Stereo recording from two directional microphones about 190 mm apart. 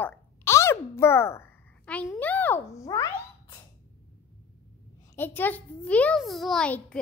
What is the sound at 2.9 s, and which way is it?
Speech, 20° left (ahead or behind).